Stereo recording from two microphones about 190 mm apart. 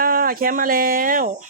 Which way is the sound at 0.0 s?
50° right (ahead or behind).